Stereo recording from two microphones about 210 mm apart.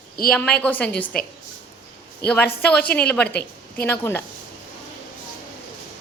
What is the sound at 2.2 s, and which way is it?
Speech, 50° left (ahead or behind).